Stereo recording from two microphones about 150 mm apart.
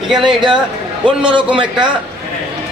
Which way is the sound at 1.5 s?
30° right (ahead or behind).